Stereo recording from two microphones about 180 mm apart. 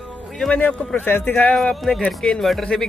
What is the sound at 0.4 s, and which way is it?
Speech, 5° left (ahead or behind).